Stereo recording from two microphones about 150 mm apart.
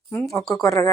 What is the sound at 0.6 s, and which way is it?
Speech, 20° left (ahead or behind).